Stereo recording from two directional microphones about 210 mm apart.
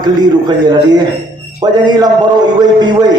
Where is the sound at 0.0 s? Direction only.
20° right (ahead or behind).